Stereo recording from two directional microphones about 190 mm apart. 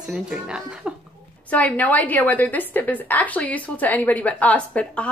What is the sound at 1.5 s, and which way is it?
A woman's voice, 10° left (ahead or behind).